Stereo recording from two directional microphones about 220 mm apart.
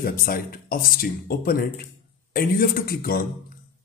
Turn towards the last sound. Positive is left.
turn(degrees=40)  # may be behind; listen again after turning